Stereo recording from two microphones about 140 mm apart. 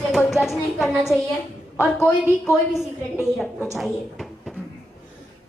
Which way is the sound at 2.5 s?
Centre (ahead or behind).